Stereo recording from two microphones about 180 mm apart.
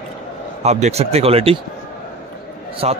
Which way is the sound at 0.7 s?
40° right (ahead or behind).